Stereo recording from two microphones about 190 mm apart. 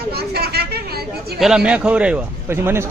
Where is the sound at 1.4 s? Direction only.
5° right (ahead or behind).